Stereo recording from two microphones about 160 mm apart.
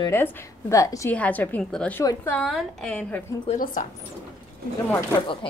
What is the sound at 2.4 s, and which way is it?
Speech, centre (ahead or behind).